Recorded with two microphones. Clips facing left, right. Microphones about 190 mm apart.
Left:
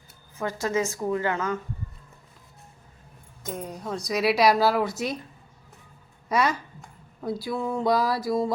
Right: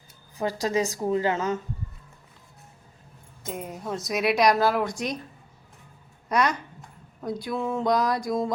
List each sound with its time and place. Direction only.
0.6 s a woman's voice: 15° right (ahead or behind)
3.5 s speech: 5° right (ahead or behind)
6.2 s speech: 5° left (ahead or behind)